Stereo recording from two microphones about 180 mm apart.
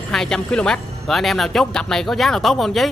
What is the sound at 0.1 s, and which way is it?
Speech, 5° left (ahead or behind).